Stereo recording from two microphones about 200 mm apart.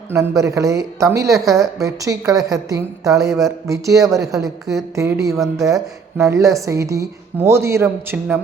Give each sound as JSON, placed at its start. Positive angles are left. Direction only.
{"t": 0.1, "sound": "a woman's voice", "side_deg": -15}